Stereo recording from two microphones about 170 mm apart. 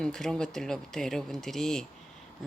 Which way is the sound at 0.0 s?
5° left (ahead or behind).